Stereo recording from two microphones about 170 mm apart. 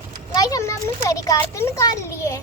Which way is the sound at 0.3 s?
20° left (ahead or behind).